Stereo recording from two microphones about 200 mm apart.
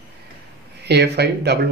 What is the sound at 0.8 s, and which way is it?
Speech, 55° right (ahead or behind).